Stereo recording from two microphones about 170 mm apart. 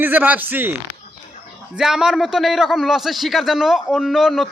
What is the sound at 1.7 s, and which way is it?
A man's voice, 5° right (ahead or behind).